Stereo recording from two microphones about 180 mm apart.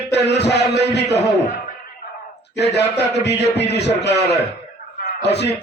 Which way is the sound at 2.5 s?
70° left (ahead or behind).